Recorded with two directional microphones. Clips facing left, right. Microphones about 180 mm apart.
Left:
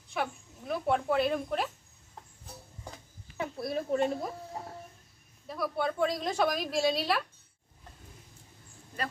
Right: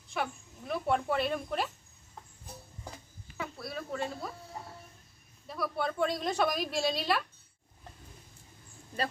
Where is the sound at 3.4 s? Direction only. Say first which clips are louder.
Left 6 dB; 25° left (ahead or behind).